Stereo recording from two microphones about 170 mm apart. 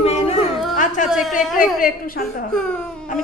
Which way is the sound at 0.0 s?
35° left (ahead or behind).